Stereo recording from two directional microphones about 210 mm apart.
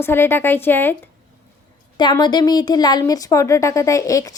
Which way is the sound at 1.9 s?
20° left (ahead or behind).